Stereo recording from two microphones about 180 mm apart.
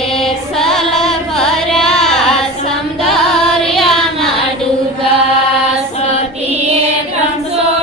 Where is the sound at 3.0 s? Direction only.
Centre (ahead or behind).